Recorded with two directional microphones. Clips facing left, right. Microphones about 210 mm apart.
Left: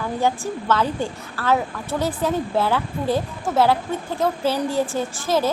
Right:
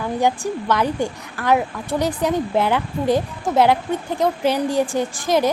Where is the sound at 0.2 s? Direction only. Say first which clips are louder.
Right 2 dB; 15° right (ahead or behind).